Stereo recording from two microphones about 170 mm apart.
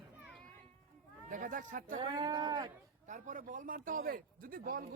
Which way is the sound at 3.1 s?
45° right (ahead or behind).